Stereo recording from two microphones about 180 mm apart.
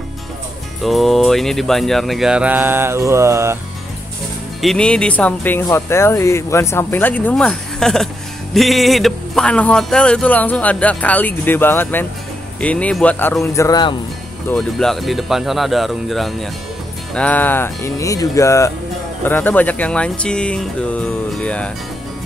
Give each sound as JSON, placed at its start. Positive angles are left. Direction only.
{"t": 0.8, "sound": "speech", "side_deg": 0}
{"t": 4.6, "sound": "speech", "side_deg": 5}
{"t": 14.5, "sound": "speech", "side_deg": 5}